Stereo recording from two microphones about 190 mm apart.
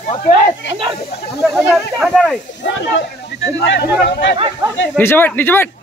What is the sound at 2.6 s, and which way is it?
Speech, 65° left (ahead or behind).